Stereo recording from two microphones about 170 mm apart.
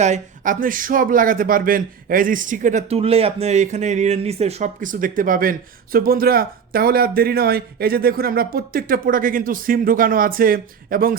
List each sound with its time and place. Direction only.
0.0 s speech: 45° right (ahead or behind)